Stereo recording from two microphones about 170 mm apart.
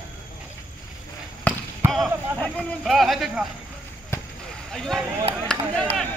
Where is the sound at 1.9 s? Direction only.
5° left (ahead or behind).